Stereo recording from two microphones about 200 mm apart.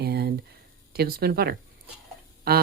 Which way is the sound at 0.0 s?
55° right (ahead or behind).